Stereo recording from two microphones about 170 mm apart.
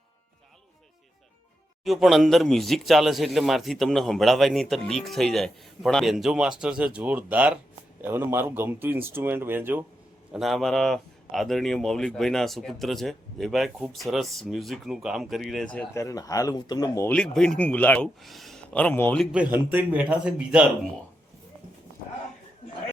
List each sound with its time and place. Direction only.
1.8 s a man's voice: centre (ahead or behind)
10.3 s a man's voice: centre (ahead or behind)
16.0 s speech: 20° left (ahead or behind)
17.1 s a man's voice: 5° left (ahead or behind)
19.2 s speech: 5° right (ahead or behind)